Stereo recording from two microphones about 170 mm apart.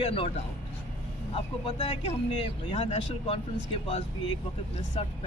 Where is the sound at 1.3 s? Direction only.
40° left (ahead or behind).